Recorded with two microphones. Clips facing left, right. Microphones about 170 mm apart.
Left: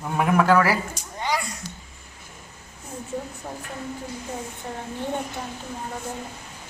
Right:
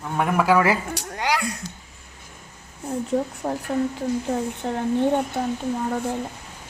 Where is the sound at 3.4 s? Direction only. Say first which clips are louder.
Right 9 dB; 60° right (ahead or behind).